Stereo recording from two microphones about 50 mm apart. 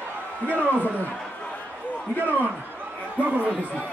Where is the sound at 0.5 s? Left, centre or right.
Right.